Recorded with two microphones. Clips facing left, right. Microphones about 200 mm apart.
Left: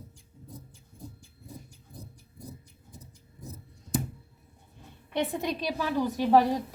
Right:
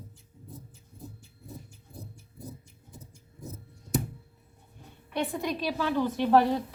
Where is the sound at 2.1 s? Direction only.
25° right (ahead or behind).